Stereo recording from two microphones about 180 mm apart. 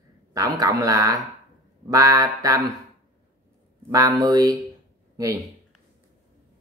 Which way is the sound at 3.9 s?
20° right (ahead or behind).